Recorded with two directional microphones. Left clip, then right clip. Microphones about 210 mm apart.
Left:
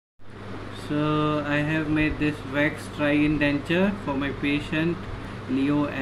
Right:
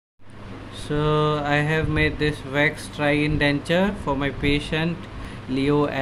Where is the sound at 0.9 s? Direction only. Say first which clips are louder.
Right 3 dB; 55° right (ahead or behind).